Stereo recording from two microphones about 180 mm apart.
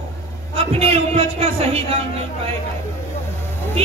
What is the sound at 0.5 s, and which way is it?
A man's voice, 35° right (ahead or behind).